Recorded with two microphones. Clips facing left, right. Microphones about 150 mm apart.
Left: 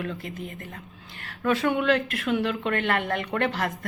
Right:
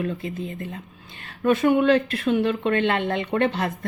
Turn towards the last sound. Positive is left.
turn(degrees=-25)  # may be behind; listen again after turning